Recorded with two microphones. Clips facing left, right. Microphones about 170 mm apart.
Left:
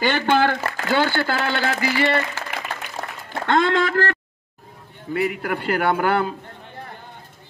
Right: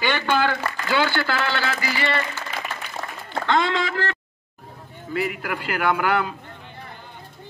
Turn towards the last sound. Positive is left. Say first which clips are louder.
# left 2 dB
turn(degrees=45)  # may be behind; listen again after turning